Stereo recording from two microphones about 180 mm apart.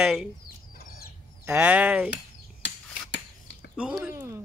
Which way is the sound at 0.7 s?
60° left (ahead or behind).